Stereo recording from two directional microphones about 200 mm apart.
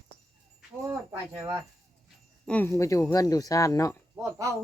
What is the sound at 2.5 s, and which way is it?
Speech, 10° left (ahead or behind).